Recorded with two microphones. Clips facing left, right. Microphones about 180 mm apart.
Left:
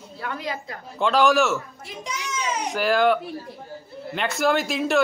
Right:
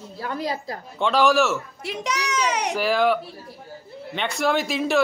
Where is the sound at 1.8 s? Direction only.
75° right (ahead or behind).